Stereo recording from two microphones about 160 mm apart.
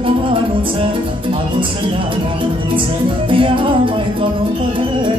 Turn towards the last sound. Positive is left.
turn(degrees=-30)  # may be behind; listen again after turning